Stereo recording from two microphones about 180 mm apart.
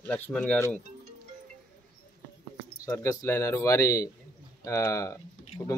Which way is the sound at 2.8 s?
15° left (ahead or behind).